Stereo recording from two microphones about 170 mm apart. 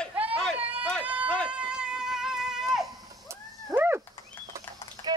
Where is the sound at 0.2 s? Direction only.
10° right (ahead or behind).